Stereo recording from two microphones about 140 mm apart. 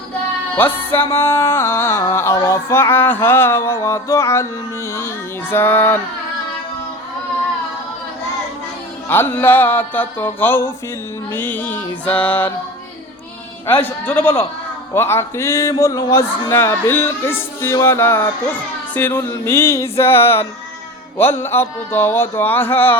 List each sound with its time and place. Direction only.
0.5 s music: 15° left (ahead or behind)
4.9 s female singing: 20° left (ahead or behind)
9.0 s music: 15° left (ahead or behind)
13.7 s music: 15° left (ahead or behind)